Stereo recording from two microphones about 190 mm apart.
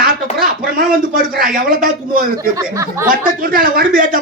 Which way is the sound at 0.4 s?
50° right (ahead or behind).